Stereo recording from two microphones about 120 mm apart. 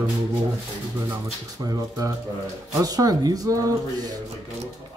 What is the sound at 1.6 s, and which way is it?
A man's voice, 30° right (ahead or behind).